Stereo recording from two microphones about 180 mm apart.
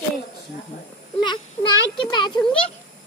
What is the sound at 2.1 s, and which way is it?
Speech, 25° left (ahead or behind).